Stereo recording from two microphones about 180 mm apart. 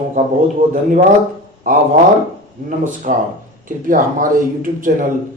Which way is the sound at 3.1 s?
45° right (ahead or behind).